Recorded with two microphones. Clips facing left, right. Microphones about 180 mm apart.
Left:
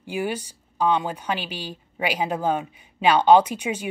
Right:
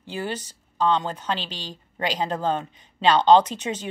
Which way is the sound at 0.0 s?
10° left (ahead or behind).